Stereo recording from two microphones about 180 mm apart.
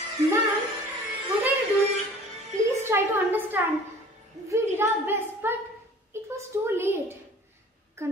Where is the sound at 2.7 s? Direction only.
15° right (ahead or behind).